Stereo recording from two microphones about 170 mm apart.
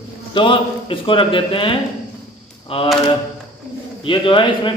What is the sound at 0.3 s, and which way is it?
Speech, 30° left (ahead or behind).